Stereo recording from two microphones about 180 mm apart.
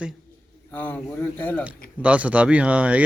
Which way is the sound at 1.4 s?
10° left (ahead or behind).